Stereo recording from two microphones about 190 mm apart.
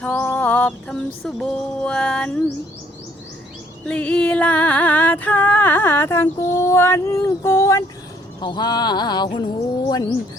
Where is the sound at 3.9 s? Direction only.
5° left (ahead or behind).